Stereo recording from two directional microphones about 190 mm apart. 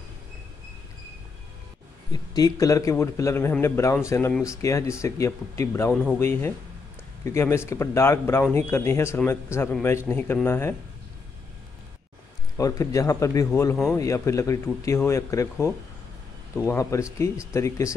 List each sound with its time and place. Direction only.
2.1 s a man's voice: 20° left (ahead or behind)
12.5 s a man's voice: 20° left (ahead or behind)